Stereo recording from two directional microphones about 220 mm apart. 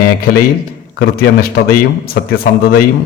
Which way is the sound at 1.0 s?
45° left (ahead or behind).